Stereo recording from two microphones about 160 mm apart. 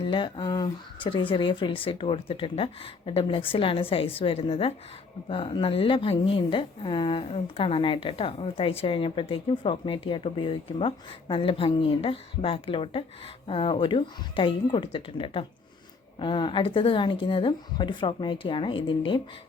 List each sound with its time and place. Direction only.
0.0 s a woman's voice: 30° left (ahead or behind)